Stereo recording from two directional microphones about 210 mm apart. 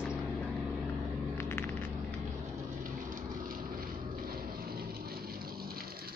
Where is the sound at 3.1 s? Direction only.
45° right (ahead or behind).